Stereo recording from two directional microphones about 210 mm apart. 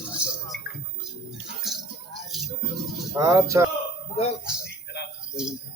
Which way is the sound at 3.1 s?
15° right (ahead or behind).